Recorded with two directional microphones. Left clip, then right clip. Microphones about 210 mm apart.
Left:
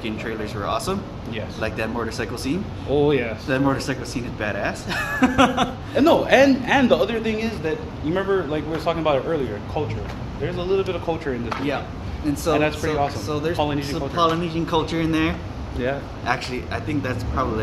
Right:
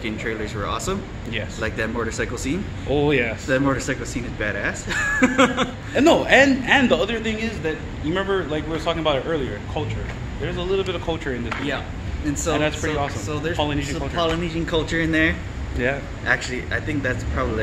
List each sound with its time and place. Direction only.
0.0 s speech: 5° left (ahead or behind)
2.9 s speech: 30° right (ahead or behind)
3.4 s speech: 5° left (ahead or behind)
5.9 s a man's voice: 25° right (ahead or behind)
12.5 s a man's voice: 10° right (ahead or behind)
13.3 s speech: 5° left (ahead or behind)
13.6 s a man's voice: 10° right (ahead or behind)
14.1 s speech: centre (ahead or behind)